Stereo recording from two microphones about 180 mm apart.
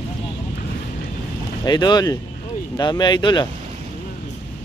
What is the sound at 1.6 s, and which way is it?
Speech, 25° left (ahead or behind).